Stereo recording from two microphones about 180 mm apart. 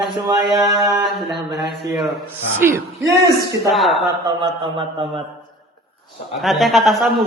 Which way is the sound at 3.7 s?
Centre (ahead or behind).